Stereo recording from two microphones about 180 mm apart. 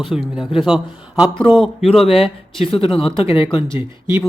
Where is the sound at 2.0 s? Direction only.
35° left (ahead or behind).